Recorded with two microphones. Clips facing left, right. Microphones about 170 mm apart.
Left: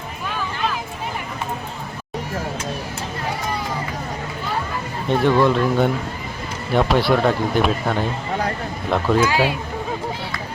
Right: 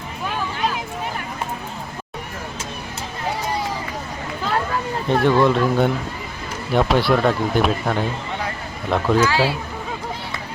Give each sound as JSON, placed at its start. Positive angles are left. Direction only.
{"t": 5.0, "sound": "speech", "side_deg": 0}
{"t": 9.2, "sound": "speech", "side_deg": 15}